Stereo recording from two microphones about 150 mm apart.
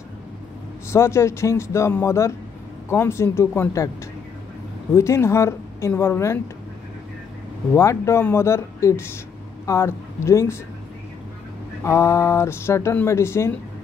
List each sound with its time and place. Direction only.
0.8 s speech: 15° left (ahead or behind)
4.9 s speech: 20° left (ahead or behind)
7.7 s speech: 20° left (ahead or behind)
11.8 s speech: 20° left (ahead or behind)